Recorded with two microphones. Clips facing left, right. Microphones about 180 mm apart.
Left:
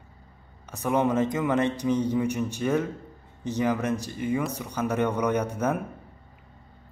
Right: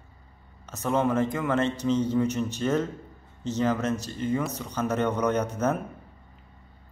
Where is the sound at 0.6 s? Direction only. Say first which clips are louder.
Left 1 dB; 10° left (ahead or behind).